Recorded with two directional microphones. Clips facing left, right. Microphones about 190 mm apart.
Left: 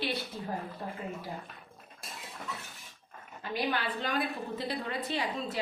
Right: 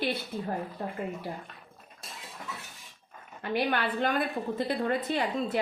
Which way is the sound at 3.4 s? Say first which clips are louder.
Right 4 dB; 60° right (ahead or behind).